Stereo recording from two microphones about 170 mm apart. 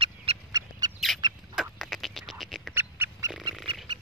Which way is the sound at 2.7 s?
10° right (ahead or behind).